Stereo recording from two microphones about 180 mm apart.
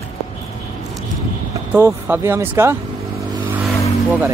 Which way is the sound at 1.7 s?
10° right (ahead or behind).